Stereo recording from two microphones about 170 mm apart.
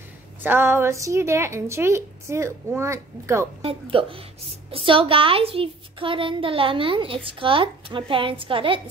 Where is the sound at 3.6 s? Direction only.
30° right (ahead or behind).